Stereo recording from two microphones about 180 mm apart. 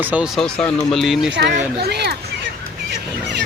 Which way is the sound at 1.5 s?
60° right (ahead or behind).